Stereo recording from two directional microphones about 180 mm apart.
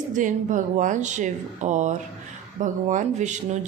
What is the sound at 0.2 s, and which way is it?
Speech, 45° right (ahead or behind).